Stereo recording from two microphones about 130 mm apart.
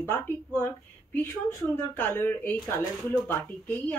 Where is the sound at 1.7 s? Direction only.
15° left (ahead or behind).